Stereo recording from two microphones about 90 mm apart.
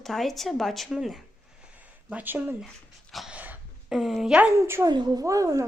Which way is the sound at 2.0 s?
20° right (ahead or behind).